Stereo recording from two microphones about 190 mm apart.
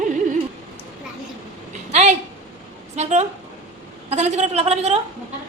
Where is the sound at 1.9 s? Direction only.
35° right (ahead or behind).